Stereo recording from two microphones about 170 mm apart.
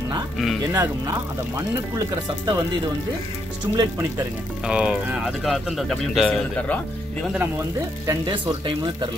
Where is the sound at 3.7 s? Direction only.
25° right (ahead or behind).